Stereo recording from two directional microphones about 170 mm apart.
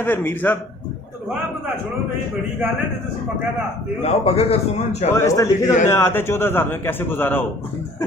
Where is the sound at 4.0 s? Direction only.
35° left (ahead or behind).